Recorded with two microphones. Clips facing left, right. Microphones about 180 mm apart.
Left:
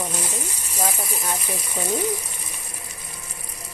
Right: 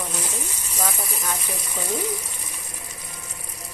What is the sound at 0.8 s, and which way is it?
Speech, 30° left (ahead or behind).